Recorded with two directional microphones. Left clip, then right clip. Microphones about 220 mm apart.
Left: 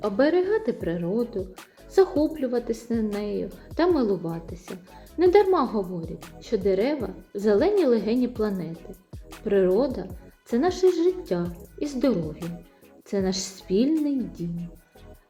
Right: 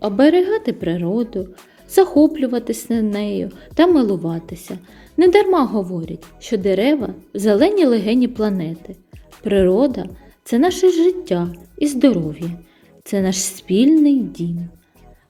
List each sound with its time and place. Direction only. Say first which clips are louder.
0.2 s a woman's voice: right 8 dB; 40° right (ahead or behind)
6.0 s speech: right 6 dB; centre (ahead or behind)
6.4 s a woman's voice: right 6 dB; 40° right (ahead or behind)